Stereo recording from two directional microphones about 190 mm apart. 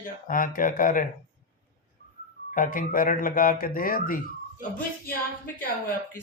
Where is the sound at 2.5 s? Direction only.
45° left (ahead or behind).